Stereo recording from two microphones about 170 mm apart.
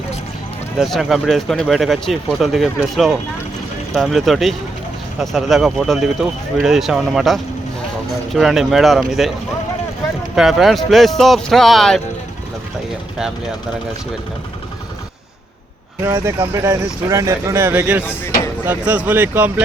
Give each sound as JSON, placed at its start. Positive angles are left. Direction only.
{"t": 0.8, "sound": "speech", "side_deg": 0}
{"t": 10.3, "sound": "speech", "side_deg": 0}
{"t": 16.0, "sound": "speech", "side_deg": -15}